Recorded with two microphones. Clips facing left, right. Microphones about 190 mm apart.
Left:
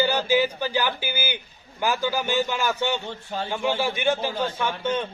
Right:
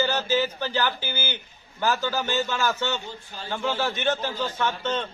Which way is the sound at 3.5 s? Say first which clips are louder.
Left 1 dB; 15° left (ahead or behind).